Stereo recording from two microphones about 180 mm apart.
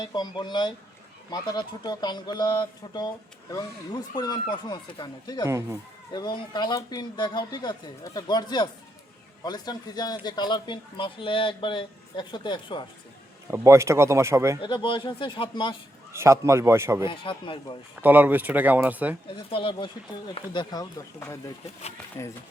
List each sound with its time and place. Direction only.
0.0 s a man's voice: 25° left (ahead or behind)
4.1 s a man's voice: 25° left (ahead or behind)
5.5 s speech: 15° right (ahead or behind)
6.1 s a man's voice: 25° left (ahead or behind)
13.5 s speech: 15° right (ahead or behind)
14.6 s a man's voice: 25° left (ahead or behind)
16.1 s speech: 15° right (ahead or behind)
17.1 s a man's voice: 30° left (ahead or behind)
18.0 s speech: 10° right (ahead or behind)
19.5 s a man's voice: 30° left (ahead or behind)